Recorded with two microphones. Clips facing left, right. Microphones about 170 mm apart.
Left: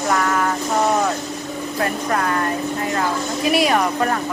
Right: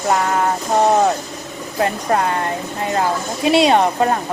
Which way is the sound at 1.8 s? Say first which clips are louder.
Right 4 dB; 25° right (ahead or behind).